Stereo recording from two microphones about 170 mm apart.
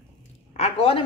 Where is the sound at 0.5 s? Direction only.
35° left (ahead or behind).